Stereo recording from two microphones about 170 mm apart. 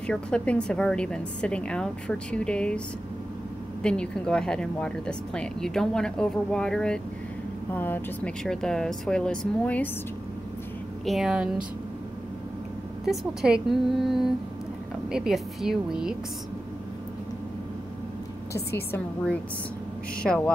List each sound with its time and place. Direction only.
0.0 s a woman's voice: 5° left (ahead or behind)
3.8 s a woman's voice: 5° left (ahead or behind)
11.1 s a woman's voice: centre (ahead or behind)
13.0 s a woman's voice: centre (ahead or behind)
18.7 s a woman's voice: 70° left (ahead or behind)
20.2 s a woman's voice: 5° left (ahead or behind)